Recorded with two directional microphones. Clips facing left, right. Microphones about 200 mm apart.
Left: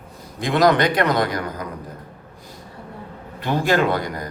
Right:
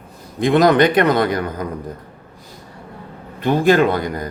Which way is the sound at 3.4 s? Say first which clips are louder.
Right 5 dB; 20° right (ahead or behind).